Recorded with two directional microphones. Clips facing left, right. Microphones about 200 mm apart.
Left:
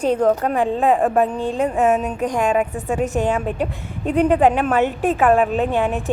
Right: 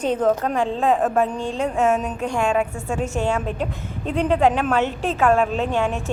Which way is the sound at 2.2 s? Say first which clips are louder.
Left 3 dB; 40° left (ahead or behind).